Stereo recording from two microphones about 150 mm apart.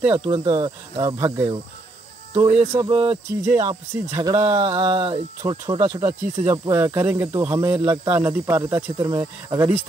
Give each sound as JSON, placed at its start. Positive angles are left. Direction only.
{"t": 0.1, "sound": "speech", "side_deg": -30}
{"t": 2.5, "sound": "speech", "side_deg": -15}
{"t": 2.9, "sound": "speech", "side_deg": -35}
{"t": 3.4, "sound": "speech", "side_deg": -20}
{"t": 4.6, "sound": "speech", "side_deg": -40}
{"t": 8.2, "sound": "speech", "side_deg": -15}